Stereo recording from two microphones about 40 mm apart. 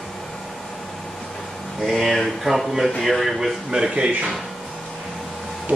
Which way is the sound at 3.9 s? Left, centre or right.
Right.